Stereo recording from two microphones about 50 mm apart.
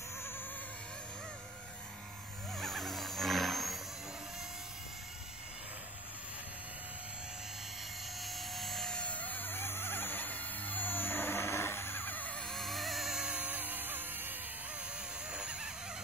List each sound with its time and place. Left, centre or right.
0.2 s a sound: left
2.5 s wild animals: centre
8.2 s helicopter: centre
8.9 s music: left
12.4 s vehicle: centre
13.1 s vehicle: centre
13.4 s music: right
15.3 s vehicle: centre